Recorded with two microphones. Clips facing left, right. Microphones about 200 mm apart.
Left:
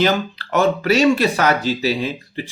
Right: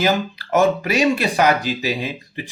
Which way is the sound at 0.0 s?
15° right (ahead or behind).